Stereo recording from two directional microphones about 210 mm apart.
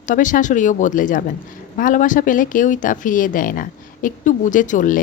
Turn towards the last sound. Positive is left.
turn(degrees=40)  # may be behind; listen again after turning